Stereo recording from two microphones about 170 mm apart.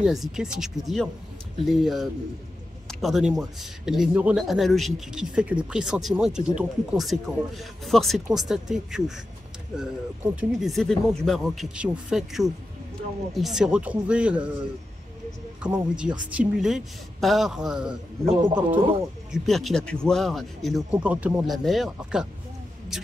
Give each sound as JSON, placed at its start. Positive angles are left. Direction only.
{"t": 0.0, "sound": "speech", "side_deg": -5}
{"t": 15.6, "sound": "speech", "side_deg": -5}
{"t": 18.5, "sound": "speech", "side_deg": -30}
{"t": 19.3, "sound": "speech", "side_deg": 0}